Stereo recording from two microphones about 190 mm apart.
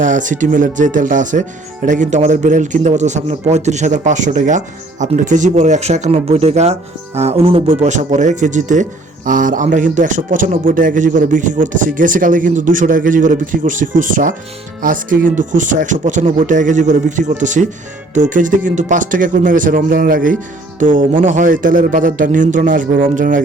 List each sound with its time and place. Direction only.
0.0 s speech: 40° right (ahead or behind)